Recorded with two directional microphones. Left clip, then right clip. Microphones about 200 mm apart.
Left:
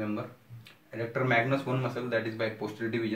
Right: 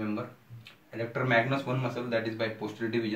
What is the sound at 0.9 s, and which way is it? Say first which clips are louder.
Speech: right 1 dB; 15° left (ahead or behind).